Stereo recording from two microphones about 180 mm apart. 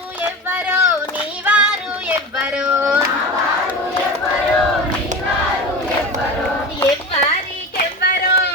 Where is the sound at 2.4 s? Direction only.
5° right (ahead or behind).